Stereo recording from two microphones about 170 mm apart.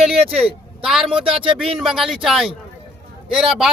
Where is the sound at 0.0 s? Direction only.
5° right (ahead or behind).